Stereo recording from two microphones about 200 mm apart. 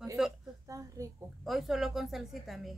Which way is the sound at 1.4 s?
Centre (ahead or behind).